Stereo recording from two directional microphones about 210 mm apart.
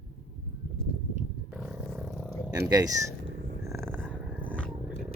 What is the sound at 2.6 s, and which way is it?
Speech, 15° right (ahead or behind).